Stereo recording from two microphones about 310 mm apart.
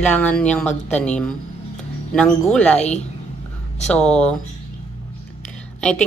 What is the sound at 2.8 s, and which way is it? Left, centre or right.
Speech, left.